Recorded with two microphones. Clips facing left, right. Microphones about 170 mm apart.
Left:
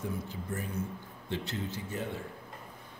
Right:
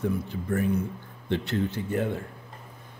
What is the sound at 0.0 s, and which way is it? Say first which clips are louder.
Speech: right 8 dB; 65° right (ahead or behind).